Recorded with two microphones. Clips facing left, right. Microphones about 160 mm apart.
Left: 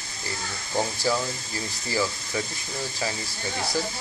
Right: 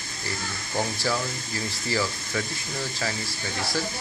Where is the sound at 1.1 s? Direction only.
20° left (ahead or behind).